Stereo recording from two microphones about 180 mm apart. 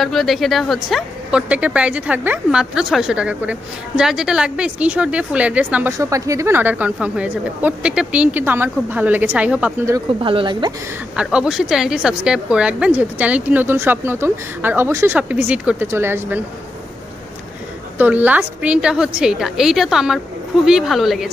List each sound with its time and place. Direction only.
0.0 s speech: centre (ahead or behind)
10.2 s speech: 30° right (ahead or behind)
11.1 s speech: 5° right (ahead or behind)
17.9 s speech: 10° right (ahead or behind)